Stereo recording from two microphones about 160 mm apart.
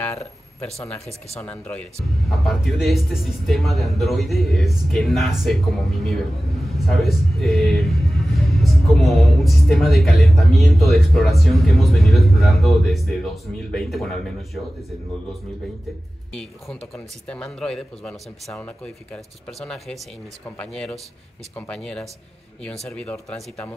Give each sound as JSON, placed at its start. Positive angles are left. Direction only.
{"t": 0.0, "sound": "a sound", "side_deg": 10}
{"t": 1.4, "sound": "speech", "side_deg": 10}
{"t": 17.3, "sound": "speech", "side_deg": 5}